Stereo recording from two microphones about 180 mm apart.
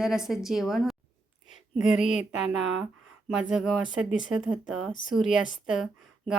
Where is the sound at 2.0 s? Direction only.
40° left (ahead or behind).